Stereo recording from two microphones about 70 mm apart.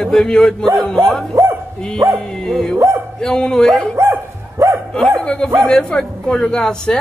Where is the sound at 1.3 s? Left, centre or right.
Right.